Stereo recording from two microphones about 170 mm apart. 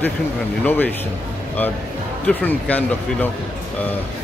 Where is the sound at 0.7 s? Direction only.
10° left (ahead or behind).